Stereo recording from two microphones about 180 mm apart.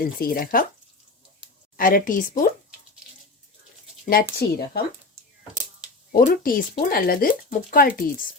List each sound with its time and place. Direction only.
0.0 s speech: 55° left (ahead or behind)
1.7 s speech: 55° left (ahead or behind)
4.0 s speech: 55° left (ahead or behind)
6.1 s speech: 50° left (ahead or behind)